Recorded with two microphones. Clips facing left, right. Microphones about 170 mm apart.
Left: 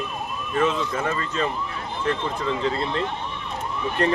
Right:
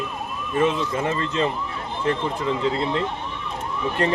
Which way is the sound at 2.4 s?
15° right (ahead or behind).